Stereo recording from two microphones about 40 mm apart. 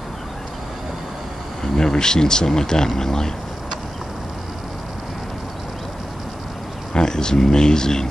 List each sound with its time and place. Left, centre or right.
1.6 s speech: centre
6.9 s speech: centre